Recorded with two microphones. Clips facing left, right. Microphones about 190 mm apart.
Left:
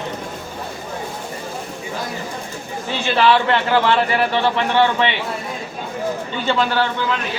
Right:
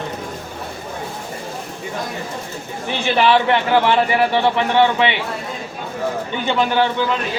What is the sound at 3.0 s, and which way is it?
A man's voice, 15° right (ahead or behind).